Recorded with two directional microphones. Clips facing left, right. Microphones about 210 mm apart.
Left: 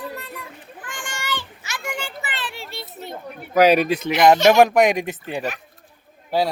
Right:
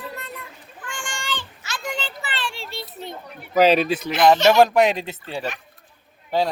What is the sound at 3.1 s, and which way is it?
Speech, 50° left (ahead or behind).